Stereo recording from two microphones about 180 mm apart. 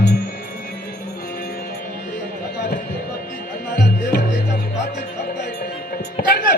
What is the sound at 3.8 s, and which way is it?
Music, 60° left (ahead or behind).